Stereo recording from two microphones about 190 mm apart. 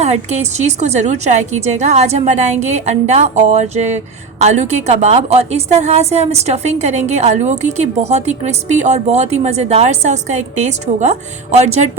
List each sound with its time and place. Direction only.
0.0 s a woman's voice: 35° right (ahead or behind)